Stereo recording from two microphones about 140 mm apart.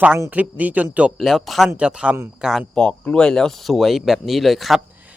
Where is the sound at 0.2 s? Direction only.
10° right (ahead or behind).